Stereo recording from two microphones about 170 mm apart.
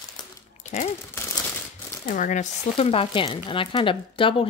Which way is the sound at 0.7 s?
40° left (ahead or behind).